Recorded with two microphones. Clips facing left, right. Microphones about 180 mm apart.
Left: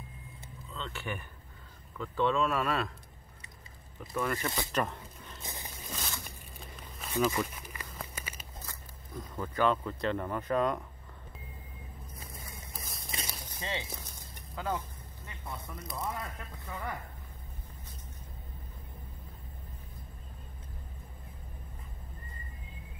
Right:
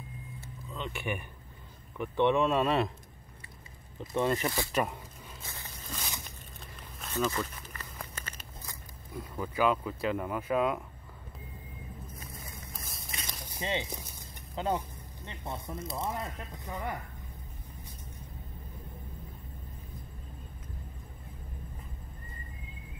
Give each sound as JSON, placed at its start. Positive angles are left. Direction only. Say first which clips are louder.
{"t": 0.7, "sound": "speech", "louder": "right 3 dB", "side_deg": -15}
{"t": 4.0, "sound": "speech", "louder": "right 4 dB", "side_deg": -25}
{"t": 4.7, "sound": "a sound", "louder": "right 2 dB", "side_deg": -10}
{"t": 5.4, "sound": "scrape", "louder": "left 4 dB", "side_deg": 15}
{"t": 7.1, "sound": "a sound", "louder": "left 2 dB", "side_deg": 10}
{"t": 7.9, "sound": "crumpling", "louder": "even", "side_deg": 5}
{"t": 8.6, "sound": "speech", "louder": "right 1 dB", "side_deg": -10}
{"t": 12.7, "sound": "a sound", "louder": "even", "side_deg": 0}
{"t": 13.5, "sound": "speech", "louder": "right 6 dB", "side_deg": -20}